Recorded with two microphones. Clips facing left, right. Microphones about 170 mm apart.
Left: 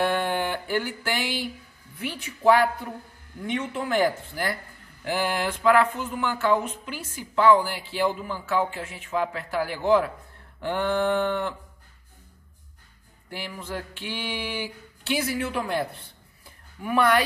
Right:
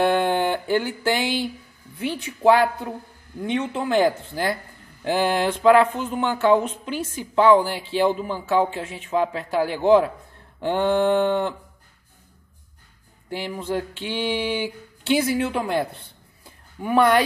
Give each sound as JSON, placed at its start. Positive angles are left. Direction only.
{"t": 0.0, "sound": "a sound", "side_deg": -25}
{"t": 2.0, "sound": "a woman's voice", "side_deg": -25}
{"t": 13.3, "sound": "a woman's voice", "side_deg": -25}
{"t": 16.8, "sound": "a woman's voice", "side_deg": -25}